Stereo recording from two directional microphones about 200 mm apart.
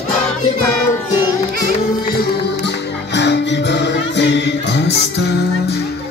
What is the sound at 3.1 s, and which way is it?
Music, 60° left (ahead or behind).